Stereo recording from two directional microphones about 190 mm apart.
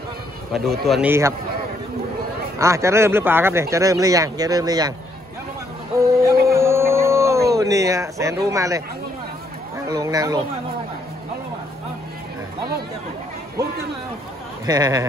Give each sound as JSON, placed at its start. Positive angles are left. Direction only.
{"t": 0.5, "sound": "speech", "side_deg": 0}
{"t": 1.0, "sound": "speech", "side_deg": -15}
{"t": 2.6, "sound": "speech", "side_deg": -15}
{"t": 5.9, "sound": "a sound", "side_deg": -15}
{"t": 9.8, "sound": "speech", "side_deg": -20}
{"t": 14.7, "sound": "speech", "side_deg": -20}